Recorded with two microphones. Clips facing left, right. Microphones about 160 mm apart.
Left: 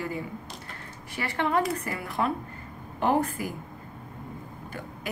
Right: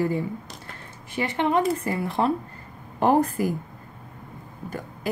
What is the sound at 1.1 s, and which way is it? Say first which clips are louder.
Speech: right 4 dB; 20° right (ahead or behind).